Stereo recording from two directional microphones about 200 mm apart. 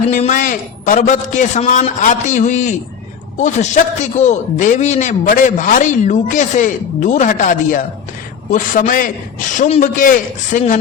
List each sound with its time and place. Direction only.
0.1 s a man's voice: 40° left (ahead or behind)